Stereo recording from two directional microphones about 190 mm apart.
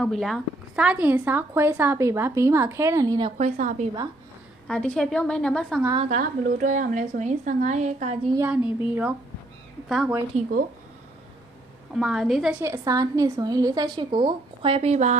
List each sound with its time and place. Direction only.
0.0 s a woman's voice: centre (ahead or behind); by 3.3 s 25° right (ahead or behind)
3.3 s a woman's voice: 40° right (ahead or behind)
4.6 s a woman's voice: 5° left (ahead or behind)
5.9 s a woman's voice: 40° right (ahead or behind)
8.4 s a woman's voice: 10° right (ahead or behind)
10.3 s a woman's voice: 40° right (ahead or behind)
11.9 s a woman's voice: centre (ahead or behind)
12.6 s a woman's voice: 15° right (ahead or behind); by 15.1 s 35° right (ahead or behind)